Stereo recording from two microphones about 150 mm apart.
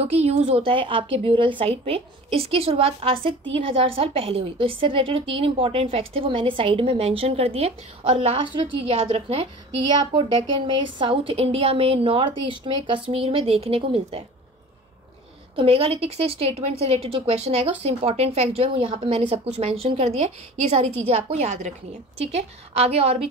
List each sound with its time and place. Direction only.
0.0 s a woman's voice: 45° right (ahead or behind)
10.7 s a woman's voice: 35° right (ahead or behind)
15.5 s a woman's voice: 40° right (ahead or behind)